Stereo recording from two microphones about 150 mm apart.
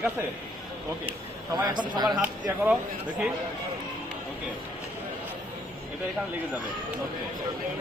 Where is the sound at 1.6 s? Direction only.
30° right (ahead or behind).